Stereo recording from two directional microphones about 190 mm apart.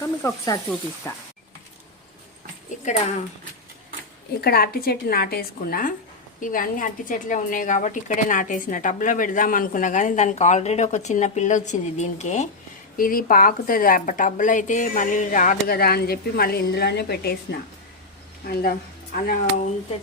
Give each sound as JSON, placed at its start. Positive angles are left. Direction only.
{"t": 0.0, "sound": "speech", "side_deg": 20}
{"t": 2.8, "sound": "a woman's voice", "side_deg": 35}
{"t": 4.4, "sound": "a woman's voice", "side_deg": 55}